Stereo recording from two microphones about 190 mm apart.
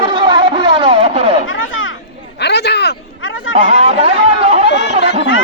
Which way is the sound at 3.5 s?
35° right (ahead or behind).